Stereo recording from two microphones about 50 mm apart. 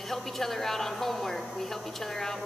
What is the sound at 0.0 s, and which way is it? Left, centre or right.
A woman's voice, centre.